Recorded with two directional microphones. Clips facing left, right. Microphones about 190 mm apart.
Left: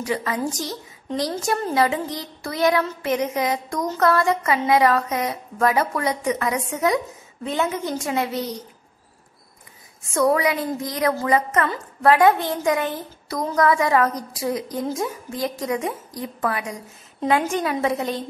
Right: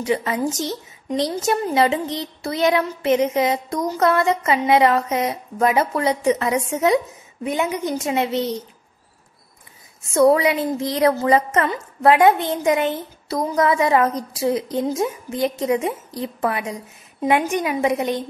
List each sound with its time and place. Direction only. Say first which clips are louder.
0.0 s a woman's voice: right 3 dB; 20° right (ahead or behind)
10.1 s a woman's voice: right 4 dB; 25° right (ahead or behind)